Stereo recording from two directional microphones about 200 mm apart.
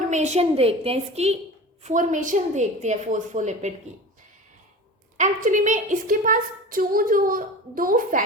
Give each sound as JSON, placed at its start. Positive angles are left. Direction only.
{"t": 0.1, "sound": "a woman's voice", "side_deg": -35}
{"t": 5.1, "sound": "a woman's voice", "side_deg": -40}